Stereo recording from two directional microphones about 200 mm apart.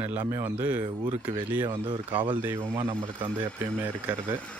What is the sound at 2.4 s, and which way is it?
Speech, 15° right (ahead or behind).